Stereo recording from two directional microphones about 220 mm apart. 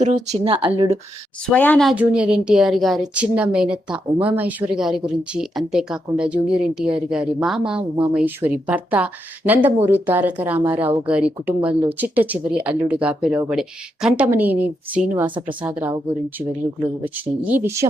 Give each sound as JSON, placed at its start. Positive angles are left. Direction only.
{"t": 0.0, "sound": "speech", "side_deg": -30}
{"t": 1.5, "sound": "a woman's voice", "side_deg": 5}
{"t": 17.0, "sound": "speech", "side_deg": -10}